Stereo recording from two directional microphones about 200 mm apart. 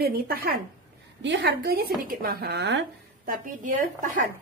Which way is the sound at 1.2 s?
60° right (ahead or behind).